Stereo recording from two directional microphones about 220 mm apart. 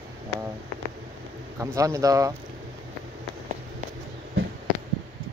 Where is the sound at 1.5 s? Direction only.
15° right (ahead or behind).